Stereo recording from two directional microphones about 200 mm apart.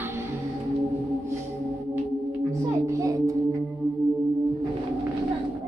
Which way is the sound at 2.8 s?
15° right (ahead or behind).